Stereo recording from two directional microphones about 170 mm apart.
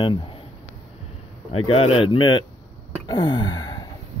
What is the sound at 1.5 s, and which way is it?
Speech, 35° left (ahead or behind).